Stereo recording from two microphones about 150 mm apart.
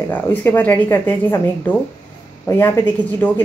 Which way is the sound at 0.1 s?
10° left (ahead or behind).